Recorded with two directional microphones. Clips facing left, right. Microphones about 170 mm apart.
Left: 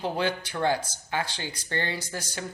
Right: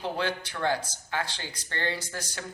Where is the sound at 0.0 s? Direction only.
15° left (ahead or behind).